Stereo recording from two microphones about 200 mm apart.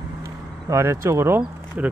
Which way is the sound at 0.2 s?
15° right (ahead or behind).